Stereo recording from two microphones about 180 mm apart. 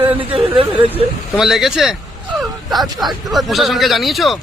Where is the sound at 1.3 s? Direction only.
Centre (ahead or behind).